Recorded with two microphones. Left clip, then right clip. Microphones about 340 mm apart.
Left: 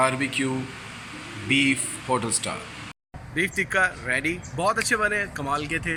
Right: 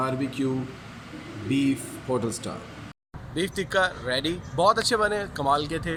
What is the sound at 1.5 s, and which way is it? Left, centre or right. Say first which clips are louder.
A man's voice: left 5 dB; centre.